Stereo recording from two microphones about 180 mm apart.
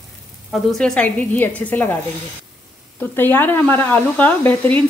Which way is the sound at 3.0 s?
10° left (ahead or behind).